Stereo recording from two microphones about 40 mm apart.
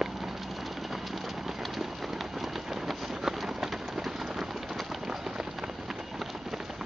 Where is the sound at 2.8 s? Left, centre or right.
Centre.